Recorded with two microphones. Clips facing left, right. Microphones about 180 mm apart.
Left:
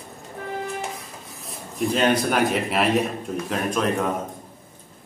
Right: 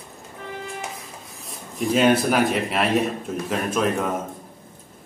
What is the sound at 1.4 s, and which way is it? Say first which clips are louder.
A man's voice: left 1 dB; 5° right (ahead or behind).